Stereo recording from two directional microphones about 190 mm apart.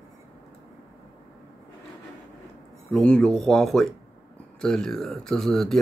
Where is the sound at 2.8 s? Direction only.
5° left (ahead or behind).